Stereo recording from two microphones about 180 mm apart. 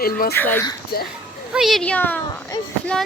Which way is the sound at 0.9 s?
60° left (ahead or behind).